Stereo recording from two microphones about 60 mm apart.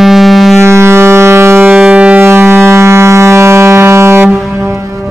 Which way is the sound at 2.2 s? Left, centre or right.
Right.